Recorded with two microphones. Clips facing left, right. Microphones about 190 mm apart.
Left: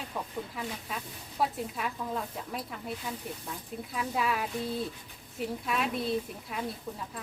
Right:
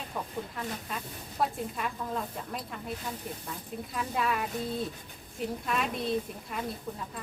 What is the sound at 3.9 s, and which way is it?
Speech, centre (ahead or behind).